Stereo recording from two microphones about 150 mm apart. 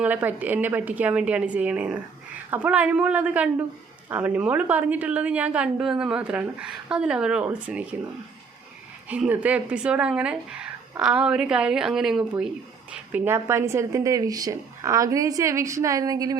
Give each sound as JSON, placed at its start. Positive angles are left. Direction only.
{"t": 0.0, "sound": "speech", "side_deg": -10}
{"t": 9.0, "sound": "a woman's voice", "side_deg": -10}